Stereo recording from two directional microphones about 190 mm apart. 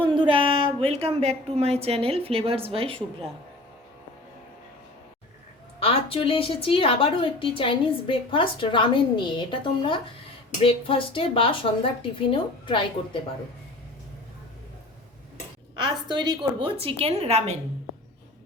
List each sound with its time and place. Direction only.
0.1 s a woman's voice: 25° right (ahead or behind)
5.8 s a woman's voice: 30° left (ahead or behind)
15.8 s a woman's voice: 25° right (ahead or behind)